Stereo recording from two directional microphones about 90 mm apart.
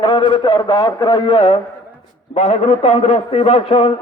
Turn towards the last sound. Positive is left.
turn(degrees=85)